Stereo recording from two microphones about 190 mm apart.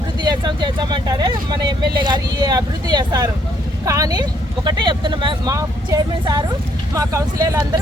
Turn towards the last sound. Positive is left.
turn(degrees=-15)  # may be behind; listen again after turning